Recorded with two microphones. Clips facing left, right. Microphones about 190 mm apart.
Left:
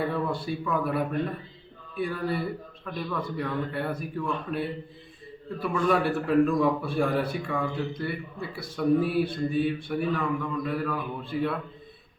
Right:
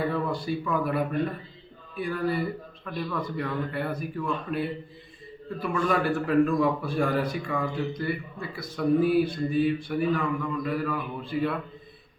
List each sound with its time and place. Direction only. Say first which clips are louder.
0.1 s a man's voice: right 1 dB; centre (ahead or behind)
5.6 s speech: left 1 dB; centre (ahead or behind)